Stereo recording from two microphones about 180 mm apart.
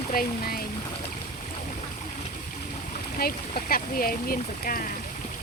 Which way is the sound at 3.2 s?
55° left (ahead or behind).